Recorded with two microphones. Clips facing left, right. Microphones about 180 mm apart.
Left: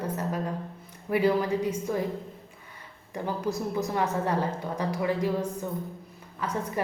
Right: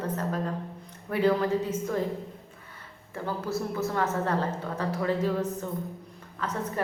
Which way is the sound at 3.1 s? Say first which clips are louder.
Left 1 dB; 15° left (ahead or behind).